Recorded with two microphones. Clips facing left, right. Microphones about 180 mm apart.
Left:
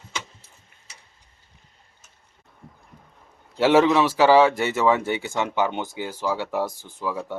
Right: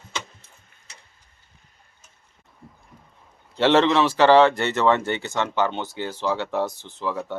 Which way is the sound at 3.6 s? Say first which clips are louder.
Left 1 dB; 10° left (ahead or behind).